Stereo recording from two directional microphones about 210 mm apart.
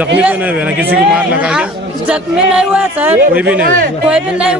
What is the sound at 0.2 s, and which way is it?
Speech, 5° right (ahead or behind).